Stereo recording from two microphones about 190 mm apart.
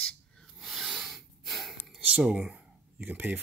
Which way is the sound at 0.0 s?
Centre (ahead or behind).